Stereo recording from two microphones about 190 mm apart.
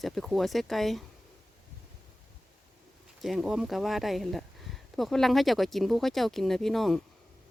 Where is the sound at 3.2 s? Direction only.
Centre (ahead or behind).